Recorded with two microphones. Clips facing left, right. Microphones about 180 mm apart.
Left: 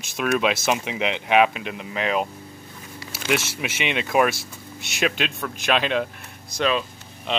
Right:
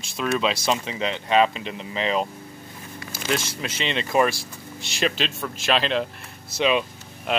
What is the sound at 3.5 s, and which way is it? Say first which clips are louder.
Speech: left 1 dB; 5° left (ahead or behind).